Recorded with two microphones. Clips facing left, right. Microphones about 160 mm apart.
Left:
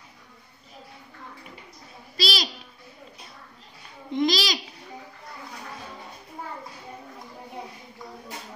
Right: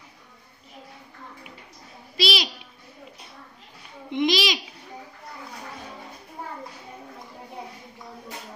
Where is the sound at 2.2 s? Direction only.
Centre (ahead or behind).